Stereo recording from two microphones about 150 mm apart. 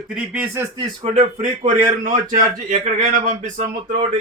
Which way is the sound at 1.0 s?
50° right (ahead or behind).